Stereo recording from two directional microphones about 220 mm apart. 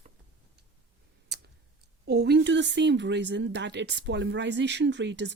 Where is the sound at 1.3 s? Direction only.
50° right (ahead or behind).